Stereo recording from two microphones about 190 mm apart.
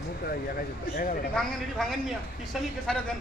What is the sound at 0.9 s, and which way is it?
Speech, 45° left (ahead or behind).